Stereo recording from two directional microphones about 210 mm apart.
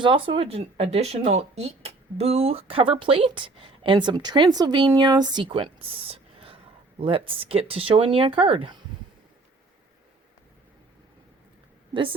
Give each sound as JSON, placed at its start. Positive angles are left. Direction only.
{"t": 0.0, "sound": "speech", "side_deg": -25}